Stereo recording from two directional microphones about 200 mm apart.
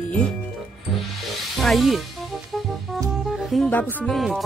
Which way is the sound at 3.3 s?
Centre (ahead or behind).